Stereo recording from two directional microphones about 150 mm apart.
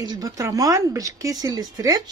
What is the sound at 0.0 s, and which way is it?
A woman's voice, 25° right (ahead or behind).